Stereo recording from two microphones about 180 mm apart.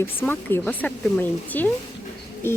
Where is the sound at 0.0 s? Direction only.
10° left (ahead or behind).